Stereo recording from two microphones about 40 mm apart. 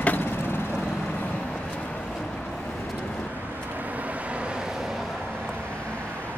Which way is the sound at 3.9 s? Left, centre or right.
Right.